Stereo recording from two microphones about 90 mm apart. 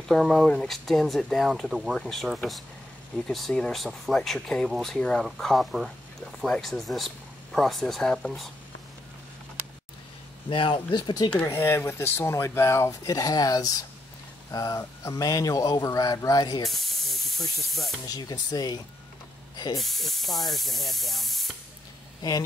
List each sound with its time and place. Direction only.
0.1 s speech: centre (ahead or behind)
10.5 s speech: 65° left (ahead or behind)
11.4 s speech: 25° left (ahead or behind); by 16.6 s 45° left (ahead or behind)
16.6 s spray: centre (ahead or behind)
18.0 s speech: 45° left (ahead or behind)
19.8 s speech: centre (ahead or behind)